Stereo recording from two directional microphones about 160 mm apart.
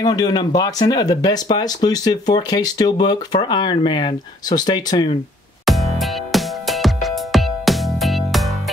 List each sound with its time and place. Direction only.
0.0 s speech: 25° left (ahead or behind)
5.7 s music: centre (ahead or behind)